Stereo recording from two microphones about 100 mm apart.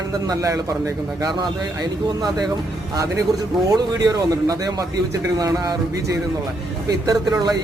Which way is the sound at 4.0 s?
35° right (ahead or behind).